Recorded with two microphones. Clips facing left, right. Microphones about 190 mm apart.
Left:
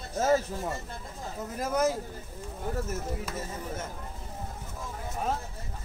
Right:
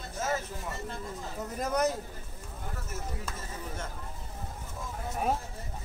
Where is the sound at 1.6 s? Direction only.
Centre (ahead or behind).